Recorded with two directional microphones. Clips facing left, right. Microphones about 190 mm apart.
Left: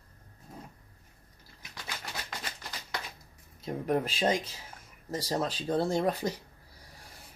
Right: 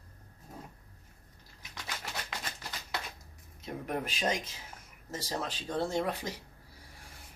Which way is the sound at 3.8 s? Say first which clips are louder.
Left 5 dB; 35° left (ahead or behind).